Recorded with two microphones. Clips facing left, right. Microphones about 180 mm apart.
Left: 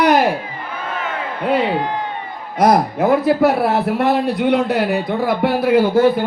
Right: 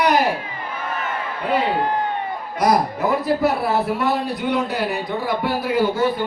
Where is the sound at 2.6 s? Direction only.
50° left (ahead or behind).